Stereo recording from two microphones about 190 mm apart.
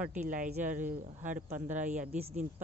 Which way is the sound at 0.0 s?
10° right (ahead or behind).